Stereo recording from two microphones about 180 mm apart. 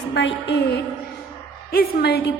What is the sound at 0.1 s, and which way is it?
Speech, 85° left.